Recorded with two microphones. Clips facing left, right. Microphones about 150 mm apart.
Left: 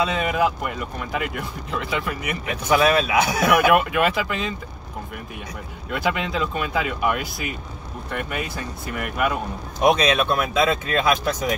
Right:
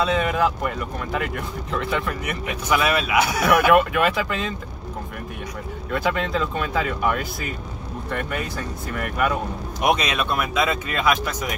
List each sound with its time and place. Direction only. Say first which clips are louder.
0.0 s speech: right 1 dB; 5° left (ahead or behind)
2.7 s speech: left 3 dB; 30° left (ahead or behind)
3.5 s speech: right 1 dB; 5° left (ahead or behind)
5.9 s speech: right 1 dB; 5° left (ahead or behind)
9.8 s speech: left 4 dB; 30° left (ahead or behind)